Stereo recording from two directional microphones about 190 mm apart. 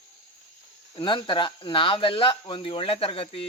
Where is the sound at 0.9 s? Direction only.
25° left (ahead or behind).